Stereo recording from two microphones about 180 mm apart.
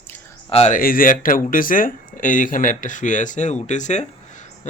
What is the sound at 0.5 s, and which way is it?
Speech, 40° left (ahead or behind).